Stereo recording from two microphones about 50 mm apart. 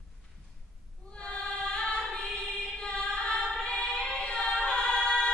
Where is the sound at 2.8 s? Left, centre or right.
Centre.